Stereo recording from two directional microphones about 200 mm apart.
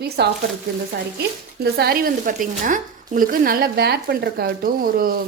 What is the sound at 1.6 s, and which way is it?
A woman's voice, 50° right (ahead or behind).